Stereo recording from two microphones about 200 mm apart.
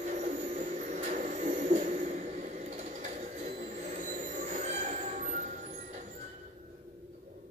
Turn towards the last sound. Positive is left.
turn(degrees=-40)  # may be behind; listen again after turning